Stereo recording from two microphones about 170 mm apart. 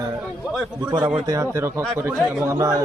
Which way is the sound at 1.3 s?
20° right (ahead or behind).